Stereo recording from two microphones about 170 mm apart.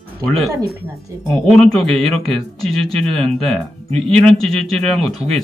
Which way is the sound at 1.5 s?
5° left (ahead or behind).